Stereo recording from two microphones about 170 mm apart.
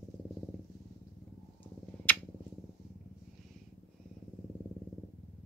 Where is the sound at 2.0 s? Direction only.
10° left (ahead or behind).